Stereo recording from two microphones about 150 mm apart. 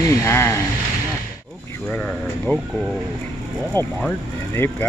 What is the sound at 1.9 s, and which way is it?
Speech, 10° left (ahead or behind).